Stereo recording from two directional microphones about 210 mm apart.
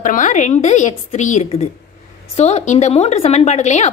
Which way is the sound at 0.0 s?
40° left (ahead or behind).